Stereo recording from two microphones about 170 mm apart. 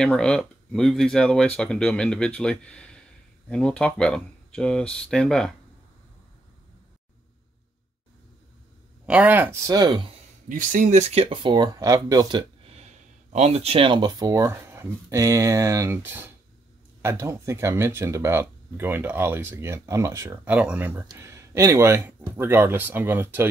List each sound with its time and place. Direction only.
0.0 s speech: 5° left (ahead or behind)
9.0 s speech: 10° right (ahead or behind); by 10.0 s 25° right (ahead or behind)
10.5 s speech: 50° right (ahead or behind); by 23.5 s 10° right (ahead or behind)